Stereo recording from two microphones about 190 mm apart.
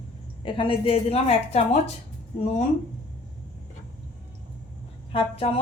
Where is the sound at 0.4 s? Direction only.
25° left (ahead or behind).